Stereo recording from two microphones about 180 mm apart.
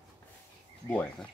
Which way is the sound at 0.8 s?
5° left (ahead or behind).